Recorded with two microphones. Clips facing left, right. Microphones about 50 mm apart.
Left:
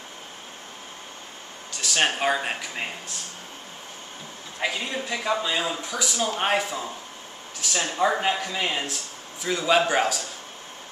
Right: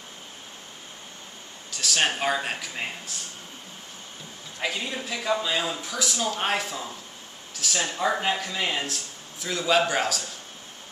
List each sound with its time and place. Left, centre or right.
1.7 s speech: centre
4.6 s a man's voice: centre